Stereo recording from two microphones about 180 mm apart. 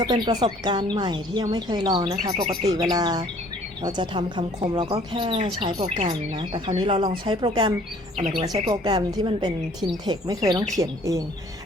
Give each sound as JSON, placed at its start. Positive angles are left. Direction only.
{"t": 0.0, "sound": "speech", "side_deg": -25}